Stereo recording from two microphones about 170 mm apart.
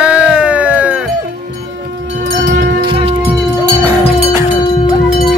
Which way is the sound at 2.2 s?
60° right (ahead or behind).